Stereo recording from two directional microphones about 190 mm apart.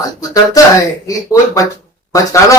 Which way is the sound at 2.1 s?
15° left (ahead or behind).